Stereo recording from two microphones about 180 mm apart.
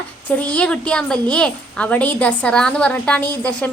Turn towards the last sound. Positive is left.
turn(degrees=5)  # may be behind; listen again after turning